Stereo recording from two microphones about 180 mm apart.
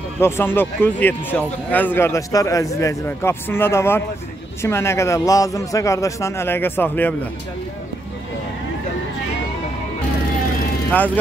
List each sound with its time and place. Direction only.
0.2 s a man's voice: 10° left (ahead or behind)